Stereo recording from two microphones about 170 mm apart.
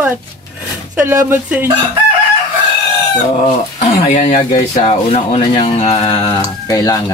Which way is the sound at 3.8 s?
40° left (ahead or behind).